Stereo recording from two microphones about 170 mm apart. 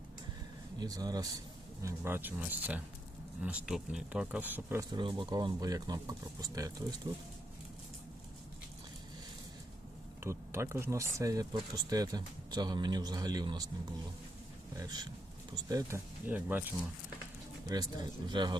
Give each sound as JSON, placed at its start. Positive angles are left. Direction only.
{"t": 0.8, "sound": "speech", "side_deg": -25}
{"t": 4.9, "sound": "speech", "side_deg": -30}
{"t": 10.2, "sound": "speech", "side_deg": -15}
{"t": 14.8, "sound": "speech", "side_deg": -25}
{"t": 17.7, "sound": "speech", "side_deg": -25}